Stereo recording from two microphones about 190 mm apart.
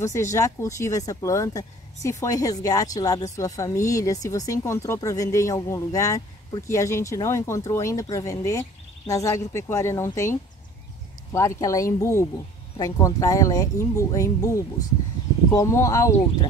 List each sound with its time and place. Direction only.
0.0 s speech: 15° left (ahead or behind)
11.3 s speech: 15° left (ahead or behind)
15.5 s speech: 15° left (ahead or behind)